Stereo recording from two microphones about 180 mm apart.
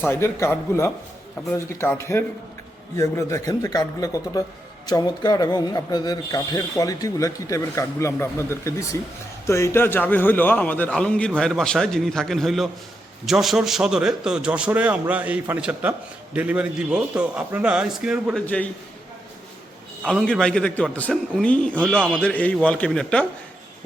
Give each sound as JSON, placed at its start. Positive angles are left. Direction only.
{"t": 0.1, "sound": "a man's voice", "side_deg": 15}
{"t": 18.4, "sound": "a man's voice", "side_deg": 10}
{"t": 20.1, "sound": "a man's voice", "side_deg": 5}